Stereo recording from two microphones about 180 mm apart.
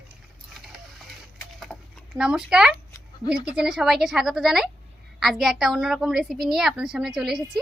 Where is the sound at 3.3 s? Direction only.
5° right (ahead or behind).